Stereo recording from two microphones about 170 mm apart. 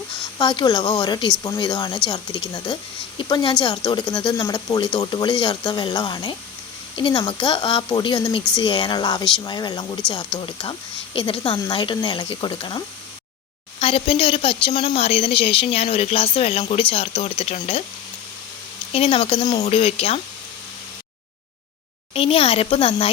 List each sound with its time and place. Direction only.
0.3 s speech: 25° left (ahead or behind)
18.9 s speech: 35° left (ahead or behind)
22.1 s speech: 35° left (ahead or behind)